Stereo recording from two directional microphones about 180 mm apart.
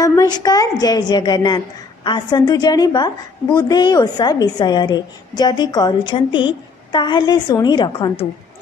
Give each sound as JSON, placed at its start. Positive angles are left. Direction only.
{"t": 0.0, "sound": "a woman's voice", "side_deg": 20}